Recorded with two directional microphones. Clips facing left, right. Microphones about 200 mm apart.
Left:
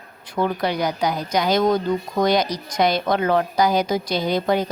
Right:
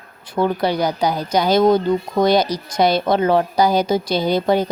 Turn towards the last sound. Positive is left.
turn(degrees=-30)  # may be behind; listen again after turning